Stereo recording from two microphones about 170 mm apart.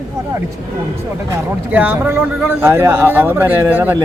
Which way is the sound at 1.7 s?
10° right (ahead or behind).